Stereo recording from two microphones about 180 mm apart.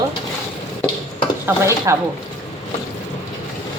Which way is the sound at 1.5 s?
15° right (ahead or behind).